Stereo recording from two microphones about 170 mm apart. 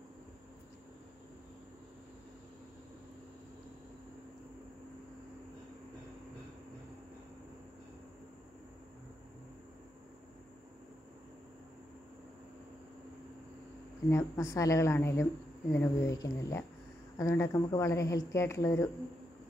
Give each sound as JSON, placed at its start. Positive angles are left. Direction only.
{"t": 14.0, "sound": "speech", "side_deg": 15}